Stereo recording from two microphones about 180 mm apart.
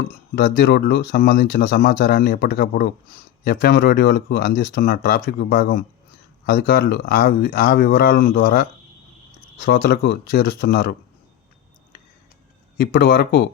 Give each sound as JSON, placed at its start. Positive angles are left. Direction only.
{"t": 0.3, "sound": "speech", "side_deg": 60}
{"t": 12.7, "sound": "speech", "side_deg": 55}